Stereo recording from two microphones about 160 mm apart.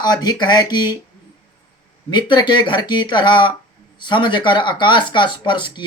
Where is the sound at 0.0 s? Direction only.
25° left (ahead or behind).